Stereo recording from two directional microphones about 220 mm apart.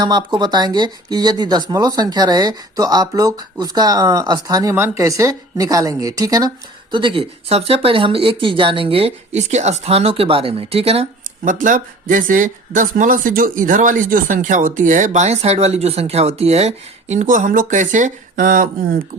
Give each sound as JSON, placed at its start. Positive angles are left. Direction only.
{"t": 0.0, "sound": "speech", "side_deg": -20}